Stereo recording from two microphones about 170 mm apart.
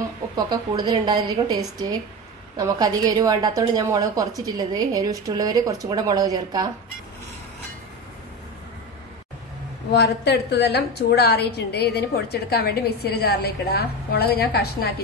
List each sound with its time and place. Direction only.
0.4 s a woman's voice: 25° right (ahead or behind)
9.9 s a woman's voice: 75° left (ahead or behind)